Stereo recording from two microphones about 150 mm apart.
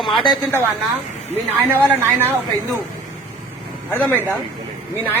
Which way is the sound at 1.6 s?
15° right (ahead or behind).